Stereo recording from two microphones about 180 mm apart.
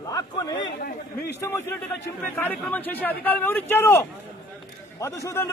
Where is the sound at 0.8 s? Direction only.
55° left (ahead or behind).